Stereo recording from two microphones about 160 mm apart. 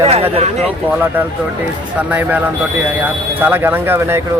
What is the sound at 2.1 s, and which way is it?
Speech, 10° right (ahead or behind).